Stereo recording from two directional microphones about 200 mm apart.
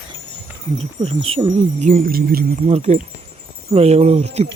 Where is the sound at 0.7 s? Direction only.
30° right (ahead or behind); by 2.6 s 50° right (ahead or behind).